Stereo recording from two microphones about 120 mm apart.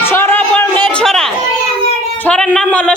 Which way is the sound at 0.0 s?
20° left (ahead or behind).